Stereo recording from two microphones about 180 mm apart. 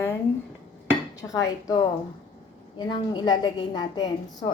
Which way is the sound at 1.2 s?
20° left (ahead or behind).